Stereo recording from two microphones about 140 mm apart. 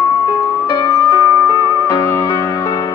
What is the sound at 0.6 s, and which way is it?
Music, 30° left (ahead or behind).